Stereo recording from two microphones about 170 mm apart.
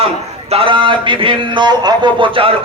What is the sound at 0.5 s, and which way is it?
A man's voice, 30° right (ahead or behind).